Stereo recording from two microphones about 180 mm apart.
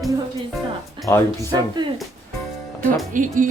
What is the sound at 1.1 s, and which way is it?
Speech, 10° left (ahead or behind).